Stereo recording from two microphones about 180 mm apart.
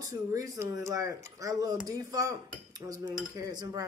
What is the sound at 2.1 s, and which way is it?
Cutlery, 20° right (ahead or behind).